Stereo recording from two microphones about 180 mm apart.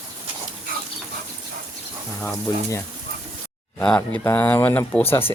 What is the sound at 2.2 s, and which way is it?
Speech, 10° left (ahead or behind).